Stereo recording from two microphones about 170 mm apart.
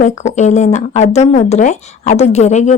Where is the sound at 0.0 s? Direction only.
45° left (ahead or behind).